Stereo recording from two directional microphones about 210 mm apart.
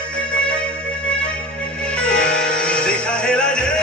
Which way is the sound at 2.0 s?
5° left (ahead or behind).